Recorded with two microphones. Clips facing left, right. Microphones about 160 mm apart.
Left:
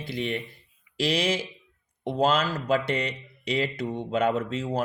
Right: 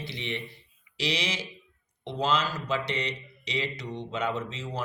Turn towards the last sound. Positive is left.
turn(degrees=55)  # may be behind; listen again after turning